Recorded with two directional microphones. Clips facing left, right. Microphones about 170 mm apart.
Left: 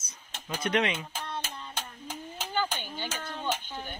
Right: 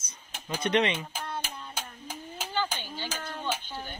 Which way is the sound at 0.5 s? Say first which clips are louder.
Right 2 dB; centre (ahead or behind).